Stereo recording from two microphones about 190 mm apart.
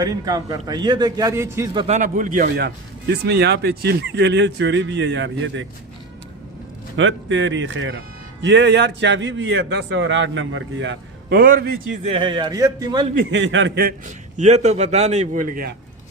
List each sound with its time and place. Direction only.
0.0 s a man's voice: 20° right (ahead or behind)
1.8 s a man's voice: 40° right (ahead or behind)
2.6 s speech: 60° right (ahead or behind); by 5.6 s 75° right (ahead or behind)
6.9 s speech: 85° right
8.4 s speech: 65° right (ahead or behind)
11.3 s a man's voice: 50° right (ahead or behind)
12.1 s a man's voice: 25° right (ahead or behind)
13.1 s speech: 75° right (ahead or behind)
14.3 s a man's voice: 35° right (ahead or behind)